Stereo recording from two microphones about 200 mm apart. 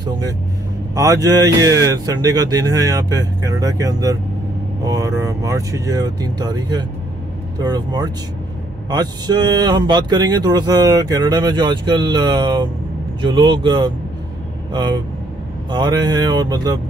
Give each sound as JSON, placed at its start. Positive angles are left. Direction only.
{"t": 0.9, "sound": "speech", "side_deg": -15}